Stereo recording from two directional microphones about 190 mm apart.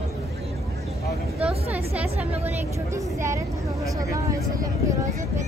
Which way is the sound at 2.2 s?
10° right (ahead or behind).